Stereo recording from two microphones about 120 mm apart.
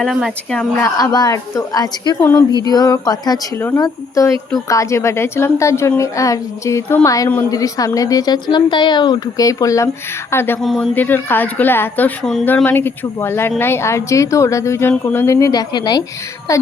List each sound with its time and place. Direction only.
0.0 s speech: centre (ahead or behind)
0.8 s a woman's voice: 25° left (ahead or behind)
10.6 s speech: 5° left (ahead or behind)
10.9 s a woman's voice: 15° left (ahead or behind)
12.2 s speech: 5° left (ahead or behind)
12.6 s a woman's voice: 15° left (ahead or behind)